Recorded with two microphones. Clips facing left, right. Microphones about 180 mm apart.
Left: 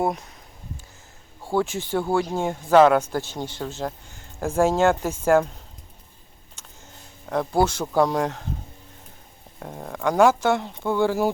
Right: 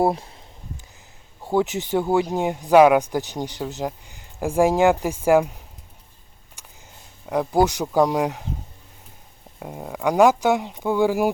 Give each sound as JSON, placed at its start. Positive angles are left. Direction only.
{"t": 0.0, "sound": "speech", "side_deg": -30}
{"t": 1.5, "sound": "speech", "side_deg": -20}
{"t": 6.6, "sound": "a sound", "side_deg": -15}
{"t": 7.3, "sound": "speech", "side_deg": -15}
{"t": 9.6, "sound": "speech", "side_deg": -10}